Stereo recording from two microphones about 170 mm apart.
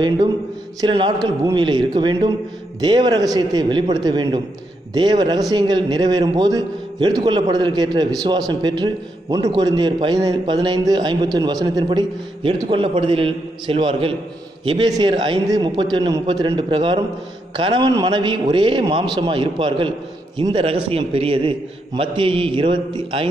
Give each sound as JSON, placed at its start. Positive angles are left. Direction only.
{"t": 0.7, "sound": "a man's voice", "side_deg": -30}